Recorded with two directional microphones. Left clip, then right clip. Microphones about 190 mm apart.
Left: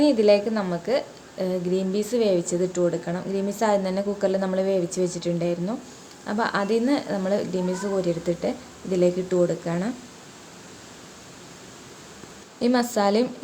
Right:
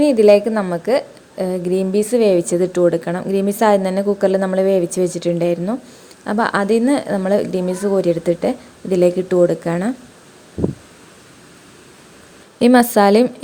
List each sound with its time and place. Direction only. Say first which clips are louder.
0.0 s a woman's voice: right 7 dB; 40° right (ahead or behind)
12.5 s a woman's voice: right 10 dB; 50° right (ahead or behind)